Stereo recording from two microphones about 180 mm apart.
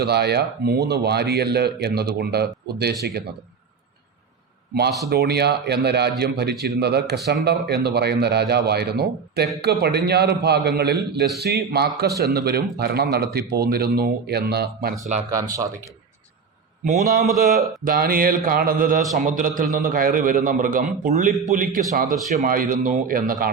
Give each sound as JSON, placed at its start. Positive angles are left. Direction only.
{"t": 0.0, "sound": "a man's voice", "side_deg": -65}
{"t": 4.7, "sound": "a man's voice", "side_deg": -65}
{"t": 15.4, "sound": "speech", "side_deg": -20}
{"t": 16.8, "sound": "speech", "side_deg": -55}